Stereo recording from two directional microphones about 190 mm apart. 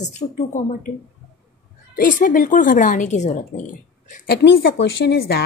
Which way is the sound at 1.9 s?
45° left (ahead or behind).